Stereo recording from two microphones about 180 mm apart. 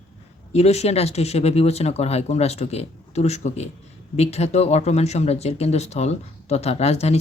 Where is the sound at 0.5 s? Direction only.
35° left (ahead or behind).